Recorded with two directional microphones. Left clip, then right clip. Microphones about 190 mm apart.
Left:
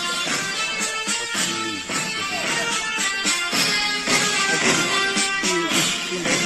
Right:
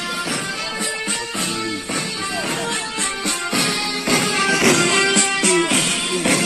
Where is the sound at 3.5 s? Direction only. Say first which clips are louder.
Even; 40° right (ahead or behind).